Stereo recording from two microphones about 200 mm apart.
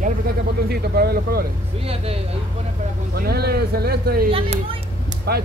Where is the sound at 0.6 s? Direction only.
50° right (ahead or behind).